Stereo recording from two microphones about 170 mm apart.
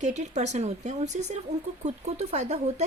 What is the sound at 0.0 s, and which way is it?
A woman's voice, 45° right (ahead or behind).